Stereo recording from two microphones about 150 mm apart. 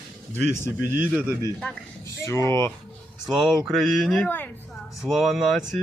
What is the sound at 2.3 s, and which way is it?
Speech, 20° left (ahead or behind).